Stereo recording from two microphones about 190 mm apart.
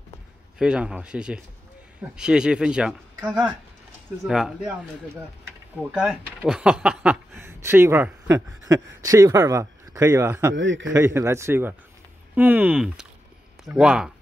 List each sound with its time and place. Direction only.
0.6 s speech: 5° right (ahead or behind)
5.8 s speech: 5° right (ahead or behind)
10.5 s a man's voice: 75° right (ahead or behind)
10.9 s speech: 15° right (ahead or behind)